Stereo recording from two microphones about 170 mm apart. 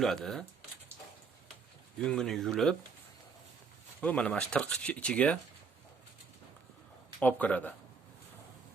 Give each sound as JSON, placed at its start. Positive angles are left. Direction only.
{"t": 0.0, "sound": "speech", "side_deg": 0}
{"t": 2.0, "sound": "speech", "side_deg": 5}
{"t": 4.0, "sound": "speech", "side_deg": 10}
{"t": 7.2, "sound": "speech", "side_deg": 10}